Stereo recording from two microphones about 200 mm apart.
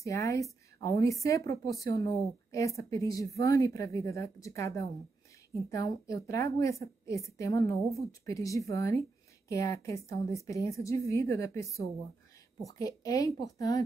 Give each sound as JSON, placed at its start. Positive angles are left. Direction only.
{"t": 0.0, "sound": "a woman's voice", "side_deg": 15}